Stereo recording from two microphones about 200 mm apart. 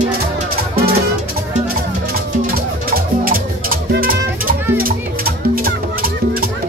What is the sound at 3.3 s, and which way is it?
Music, 45° right (ahead or behind).